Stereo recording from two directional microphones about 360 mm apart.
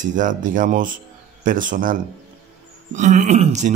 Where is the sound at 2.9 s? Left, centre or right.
Centre.